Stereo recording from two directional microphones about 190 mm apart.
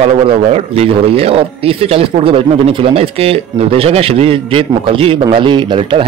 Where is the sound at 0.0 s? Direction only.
30° right (ahead or behind).